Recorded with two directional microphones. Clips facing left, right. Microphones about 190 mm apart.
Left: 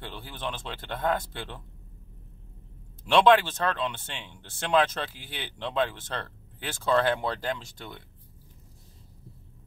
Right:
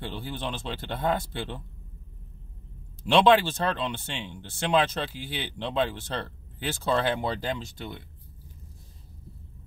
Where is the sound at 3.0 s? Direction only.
25° right (ahead or behind).